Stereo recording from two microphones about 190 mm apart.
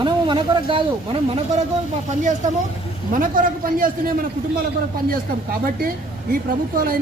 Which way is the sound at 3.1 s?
45° right (ahead or behind).